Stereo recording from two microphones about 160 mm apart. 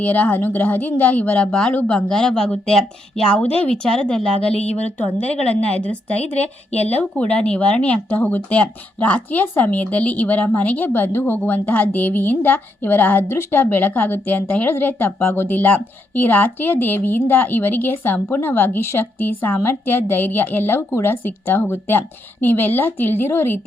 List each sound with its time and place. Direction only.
0.0 s speech: 10° left (ahead or behind)
6.3 s a woman's voice: 40° left (ahead or behind)
7.2 s speech: 10° left (ahead or behind)